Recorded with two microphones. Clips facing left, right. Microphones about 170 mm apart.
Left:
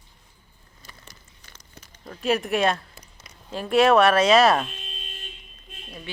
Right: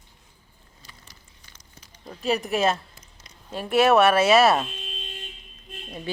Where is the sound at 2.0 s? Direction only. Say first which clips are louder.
Left 1 dB; centre (ahead or behind).